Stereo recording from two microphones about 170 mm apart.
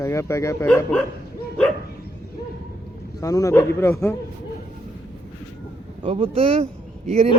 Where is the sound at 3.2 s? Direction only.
20° left (ahead or behind).